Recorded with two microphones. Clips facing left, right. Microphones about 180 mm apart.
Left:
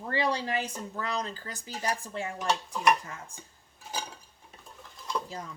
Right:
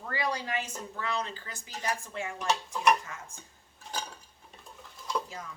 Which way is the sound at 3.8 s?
5° left (ahead or behind).